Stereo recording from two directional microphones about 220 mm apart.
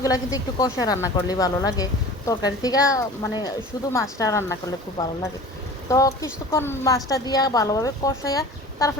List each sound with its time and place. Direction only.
0.0 s speech: 15° left (ahead or behind)